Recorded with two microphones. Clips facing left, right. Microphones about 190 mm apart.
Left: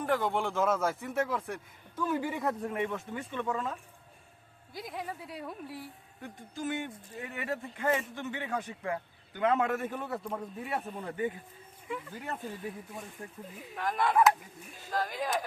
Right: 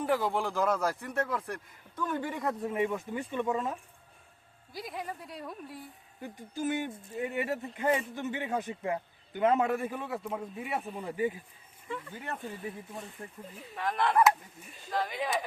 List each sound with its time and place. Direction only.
0.0 s speech: 5° right (ahead or behind)
4.7 s speech: centre (ahead or behind)
6.2 s speech: 20° right (ahead or behind)
9.9 s speech: 5° right (ahead or behind)
11.9 s speech: 5° left (ahead or behind)